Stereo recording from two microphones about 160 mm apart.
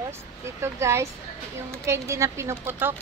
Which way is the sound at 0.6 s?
15° right (ahead or behind).